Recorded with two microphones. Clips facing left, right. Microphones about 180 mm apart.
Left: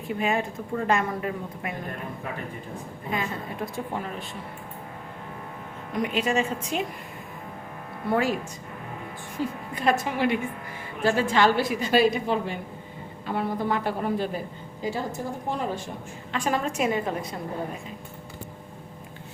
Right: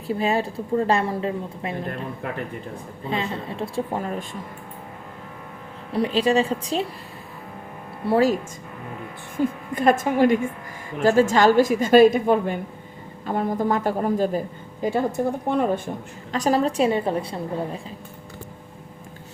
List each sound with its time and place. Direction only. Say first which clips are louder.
0.1 s a woman's voice: right 4 dB; 35° right (ahead or behind)
3.1 s a woman's voice: right 3 dB; 30° right (ahead or behind)
3.9 s a woman's voice: right 5 dB; 45° right (ahead or behind)
5.9 s a woman's voice: right 5 dB; 30° right (ahead or behind)
8.0 s a woman's voice: right 6 dB; 35° right (ahead or behind)
9.4 s a woman's voice: right 6 dB; 50° right (ahead or behind)
14.8 s a woman's voice: right 7 dB; 55° right (ahead or behind)
16.3 s a woman's voice: right 6 dB; 40° right (ahead or behind)